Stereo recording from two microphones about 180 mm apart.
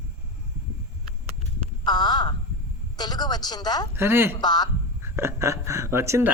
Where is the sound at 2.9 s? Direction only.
25° left (ahead or behind).